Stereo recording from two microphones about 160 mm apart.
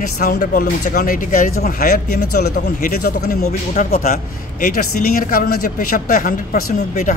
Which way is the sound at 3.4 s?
50° left (ahead or behind).